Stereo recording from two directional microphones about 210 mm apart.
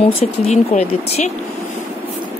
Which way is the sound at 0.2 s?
30° left (ahead or behind).